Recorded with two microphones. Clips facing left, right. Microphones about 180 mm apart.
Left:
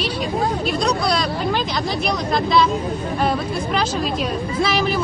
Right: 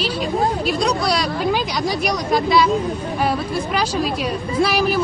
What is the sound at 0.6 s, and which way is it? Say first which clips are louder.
Speech: right 1 dB; 5° right (ahead or behind).